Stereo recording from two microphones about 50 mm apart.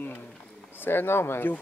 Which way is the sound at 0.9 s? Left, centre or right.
Left.